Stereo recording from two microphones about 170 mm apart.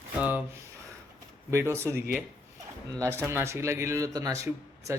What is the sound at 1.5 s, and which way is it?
Speech, 15° right (ahead or behind).